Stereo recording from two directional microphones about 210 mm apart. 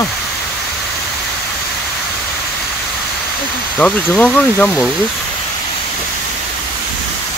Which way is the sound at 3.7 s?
5° left (ahead or behind).